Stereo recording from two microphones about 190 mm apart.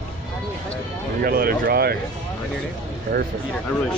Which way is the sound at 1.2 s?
50° right (ahead or behind).